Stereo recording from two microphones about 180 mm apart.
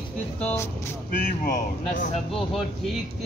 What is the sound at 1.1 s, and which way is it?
Speech, 50° left (ahead or behind).